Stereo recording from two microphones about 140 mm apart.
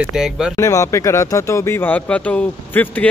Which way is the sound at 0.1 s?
5° right (ahead or behind).